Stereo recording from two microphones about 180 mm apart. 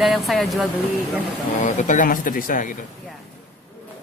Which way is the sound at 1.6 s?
45° left (ahead or behind).